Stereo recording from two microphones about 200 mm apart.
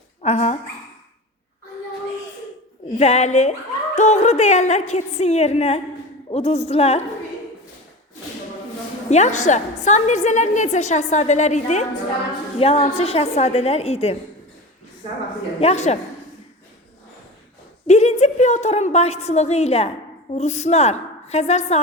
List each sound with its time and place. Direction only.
0.2 s speech: 30° left (ahead or behind)
3.0 s a woman's voice: 35° left (ahead or behind)
9.0 s a woman's voice: 35° left (ahead or behind)
15.6 s a woman's voice: 35° left (ahead or behind)
17.8 s a woman's voice: 35° left (ahead or behind)